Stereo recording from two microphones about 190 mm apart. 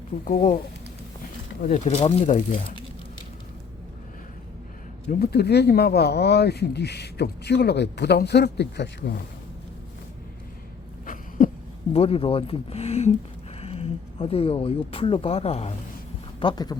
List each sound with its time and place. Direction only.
0.3 s speech: 45° left (ahead or behind)
1.6 s speech: 40° left (ahead or behind)
5.2 s speech: 60° left (ahead or behind)
11.0 s a sound: 45° left (ahead or behind)
11.9 s speech: 30° left (ahead or behind)